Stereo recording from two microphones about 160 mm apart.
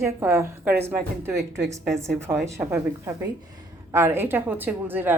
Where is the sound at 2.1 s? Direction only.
15° right (ahead or behind).